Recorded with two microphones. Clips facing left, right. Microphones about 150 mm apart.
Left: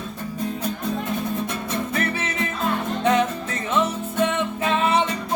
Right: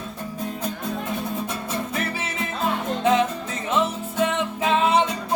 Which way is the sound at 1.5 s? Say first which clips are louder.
Left 2 dB; 5° right (ahead or behind).